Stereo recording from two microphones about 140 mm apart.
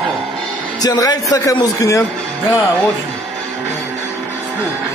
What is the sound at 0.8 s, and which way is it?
Speech, 30° left (ahead or behind).